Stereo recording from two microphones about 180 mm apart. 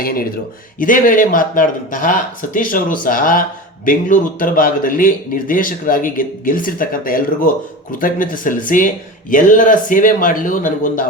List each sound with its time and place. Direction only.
0.0 s speech: 55° left (ahead or behind)